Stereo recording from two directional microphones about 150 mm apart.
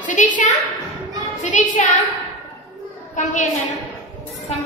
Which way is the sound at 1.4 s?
55° left (ahead or behind).